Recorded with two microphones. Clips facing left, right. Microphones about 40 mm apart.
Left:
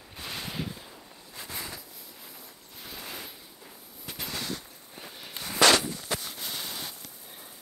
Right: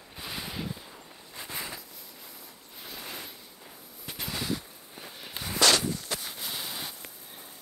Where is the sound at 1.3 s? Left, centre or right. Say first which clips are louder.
Right 1 dB; centre.